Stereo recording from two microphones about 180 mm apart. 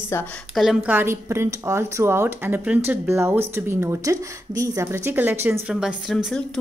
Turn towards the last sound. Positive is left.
turn(degrees=0)  # may be behind; listen again after turning